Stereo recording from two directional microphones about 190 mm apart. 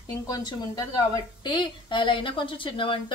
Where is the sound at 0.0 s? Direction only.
20° left (ahead or behind).